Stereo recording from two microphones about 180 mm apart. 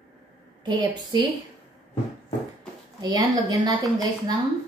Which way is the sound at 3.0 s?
20° right (ahead or behind).